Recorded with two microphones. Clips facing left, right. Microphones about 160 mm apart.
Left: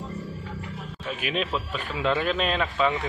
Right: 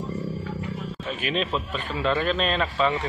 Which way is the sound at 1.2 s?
5° left (ahead or behind).